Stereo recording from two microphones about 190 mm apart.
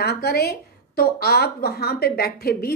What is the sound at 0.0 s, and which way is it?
A woman's voice, 55° left (ahead or behind).